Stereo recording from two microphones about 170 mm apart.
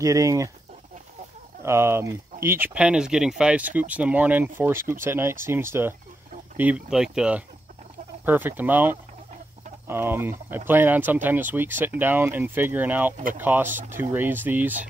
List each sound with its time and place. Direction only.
0.0 s speech: 20° right (ahead or behind)
1.6 s speech: 15° right (ahead or behind)